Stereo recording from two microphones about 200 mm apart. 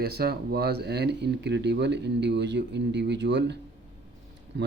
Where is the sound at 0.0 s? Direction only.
50° right (ahead or behind).